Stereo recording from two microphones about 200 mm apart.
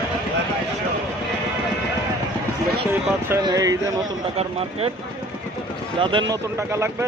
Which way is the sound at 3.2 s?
15° right (ahead or behind).